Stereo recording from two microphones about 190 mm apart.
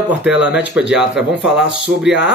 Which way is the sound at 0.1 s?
5° right (ahead or behind).